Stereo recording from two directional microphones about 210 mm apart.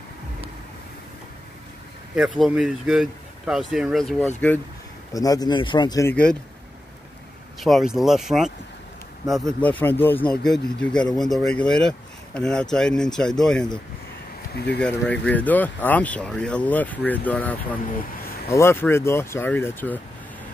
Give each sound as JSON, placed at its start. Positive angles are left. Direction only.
{"t": 2.1, "sound": "speech", "side_deg": 0}
{"t": 5.1, "sound": "speech", "side_deg": 15}
{"t": 7.6, "sound": "speech", "side_deg": 0}
{"t": 14.5, "sound": "speech", "side_deg": 50}
{"t": 14.8, "sound": "speech", "side_deg": 5}